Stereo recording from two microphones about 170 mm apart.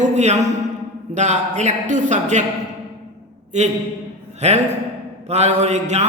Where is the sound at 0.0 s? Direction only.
40° right (ahead or behind).